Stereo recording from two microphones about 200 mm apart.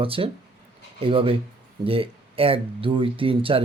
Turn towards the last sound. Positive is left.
turn(degrees=-25)  # may be behind; listen again after turning